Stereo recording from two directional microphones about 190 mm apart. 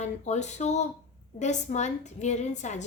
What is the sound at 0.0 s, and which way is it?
A woman's voice, 35° left (ahead or behind).